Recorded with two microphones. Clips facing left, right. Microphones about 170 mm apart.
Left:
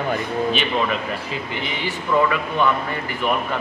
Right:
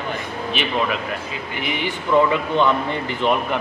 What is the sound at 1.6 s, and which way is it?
Speech, 20° right (ahead or behind).